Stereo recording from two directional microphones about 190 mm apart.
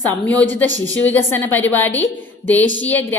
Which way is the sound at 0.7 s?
80° left.